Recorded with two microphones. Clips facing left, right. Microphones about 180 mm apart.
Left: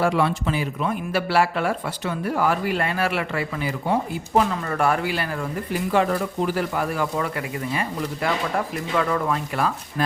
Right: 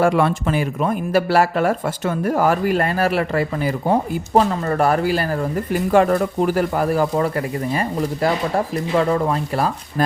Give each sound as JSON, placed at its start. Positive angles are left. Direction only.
{"t": 0.0, "sound": "speech", "side_deg": -50}